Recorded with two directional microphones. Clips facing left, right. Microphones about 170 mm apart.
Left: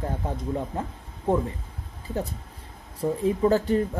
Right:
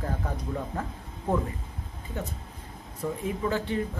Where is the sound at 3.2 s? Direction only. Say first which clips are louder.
Left 9 dB; 40° left (ahead or behind).